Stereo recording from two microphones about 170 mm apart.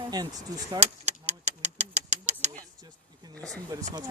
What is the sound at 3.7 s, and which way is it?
Speech, 20° right (ahead or behind).